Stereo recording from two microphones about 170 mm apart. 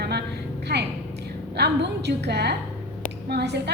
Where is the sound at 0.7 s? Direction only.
70° right (ahead or behind).